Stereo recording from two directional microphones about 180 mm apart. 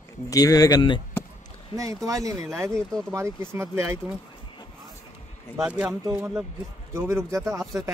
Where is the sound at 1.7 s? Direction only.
20° right (ahead or behind).